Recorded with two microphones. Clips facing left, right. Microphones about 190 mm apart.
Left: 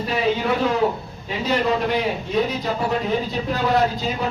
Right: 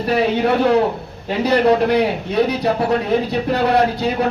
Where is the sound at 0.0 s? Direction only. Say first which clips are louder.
Right 5 dB; 70° right (ahead or behind).